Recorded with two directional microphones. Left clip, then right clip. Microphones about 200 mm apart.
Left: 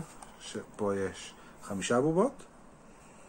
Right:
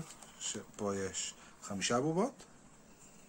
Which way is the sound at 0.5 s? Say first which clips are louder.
Left 6 dB; 30° right (ahead or behind).